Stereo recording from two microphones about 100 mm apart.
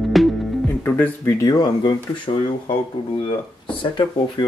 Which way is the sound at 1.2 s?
40° left (ahead or behind).